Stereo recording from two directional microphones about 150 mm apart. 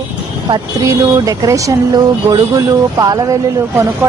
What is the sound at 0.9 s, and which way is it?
Speech, 20° right (ahead or behind).